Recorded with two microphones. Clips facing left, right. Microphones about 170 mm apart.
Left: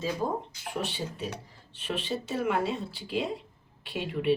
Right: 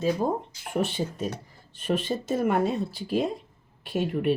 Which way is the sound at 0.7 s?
50° right (ahead or behind).